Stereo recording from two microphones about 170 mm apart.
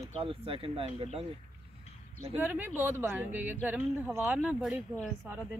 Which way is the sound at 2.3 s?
10° right (ahead or behind).